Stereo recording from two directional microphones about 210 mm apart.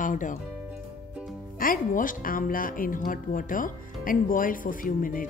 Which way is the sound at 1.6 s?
40° left (ahead or behind).